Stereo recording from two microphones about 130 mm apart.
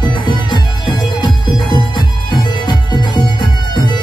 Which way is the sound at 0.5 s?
35° left (ahead or behind).